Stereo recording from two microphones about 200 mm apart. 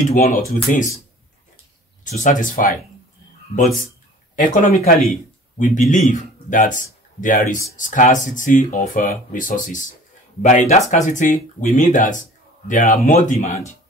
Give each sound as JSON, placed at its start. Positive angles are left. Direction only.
{"t": 0.0, "sound": "speech", "side_deg": 40}
{"t": 2.0, "sound": "speech", "side_deg": 40}
{"t": 4.4, "sound": "speech", "side_deg": 40}